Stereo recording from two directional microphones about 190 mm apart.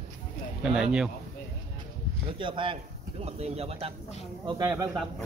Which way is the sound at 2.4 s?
25° right (ahead or behind).